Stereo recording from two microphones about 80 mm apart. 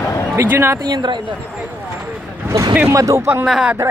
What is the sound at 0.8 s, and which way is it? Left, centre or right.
Speech, right.